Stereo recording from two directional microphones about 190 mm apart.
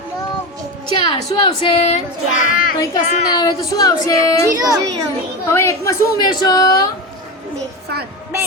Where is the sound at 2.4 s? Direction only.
45° left (ahead or behind).